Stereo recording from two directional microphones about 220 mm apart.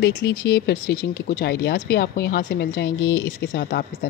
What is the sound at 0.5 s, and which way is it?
Speech, 50° left (ahead or behind).